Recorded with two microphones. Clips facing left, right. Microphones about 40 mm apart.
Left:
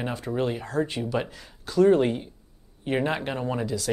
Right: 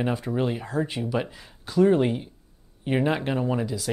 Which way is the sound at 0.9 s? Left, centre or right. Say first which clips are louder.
Even; centre.